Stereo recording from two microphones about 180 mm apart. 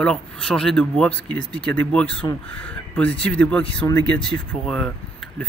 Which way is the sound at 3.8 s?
20° left (ahead or behind).